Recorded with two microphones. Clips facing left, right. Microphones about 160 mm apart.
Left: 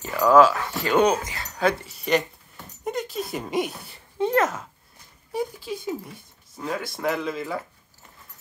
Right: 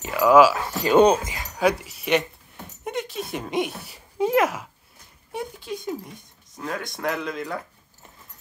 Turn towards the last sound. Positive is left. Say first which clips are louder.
# left 1 dB
turn(degrees=5)  # may be behind; listen again after turning